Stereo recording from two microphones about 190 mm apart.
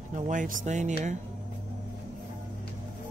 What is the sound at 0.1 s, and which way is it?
Speech, 40° right (ahead or behind).